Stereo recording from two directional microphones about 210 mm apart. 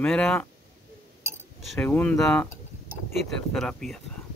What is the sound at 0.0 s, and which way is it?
Speech, 5° left (ahead or behind).